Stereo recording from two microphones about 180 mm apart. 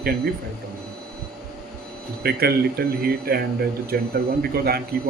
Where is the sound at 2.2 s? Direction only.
60° right (ahead or behind).